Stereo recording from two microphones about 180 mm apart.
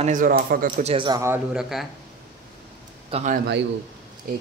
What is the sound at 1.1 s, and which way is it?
Speech, 15° right (ahead or behind).